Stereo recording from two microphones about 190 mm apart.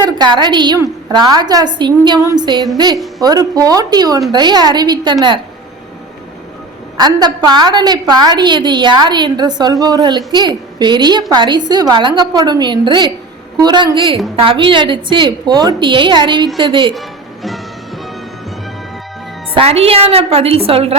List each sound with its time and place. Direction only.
0.0 s a woman's voice: 20° right (ahead or behind)
6.9 s a woman's voice: 20° right (ahead or behind)
17.4 s music: centre (ahead or behind)
19.5 s a woman's voice: 30° right (ahead or behind)